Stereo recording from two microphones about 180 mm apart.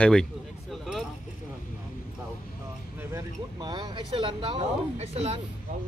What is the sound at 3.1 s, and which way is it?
Speech, 25° right (ahead or behind).